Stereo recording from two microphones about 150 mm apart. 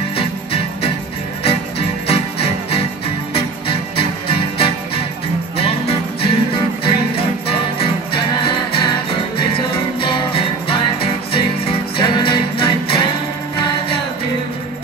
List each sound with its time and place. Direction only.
0.5 s music: 40° left (ahead or behind)